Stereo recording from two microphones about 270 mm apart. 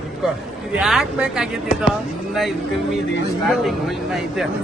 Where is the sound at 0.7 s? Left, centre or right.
Centre.